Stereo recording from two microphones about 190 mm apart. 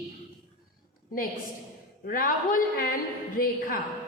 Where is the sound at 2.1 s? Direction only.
50° left (ahead or behind).